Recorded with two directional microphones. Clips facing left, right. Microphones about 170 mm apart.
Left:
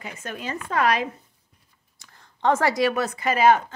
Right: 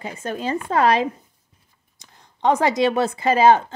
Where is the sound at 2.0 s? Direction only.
20° right (ahead or behind).